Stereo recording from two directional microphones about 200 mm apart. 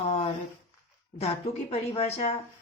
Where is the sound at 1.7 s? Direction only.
30° left (ahead or behind).